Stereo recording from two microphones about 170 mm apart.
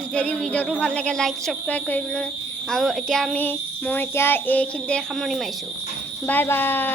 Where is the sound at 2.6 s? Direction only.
Centre (ahead or behind).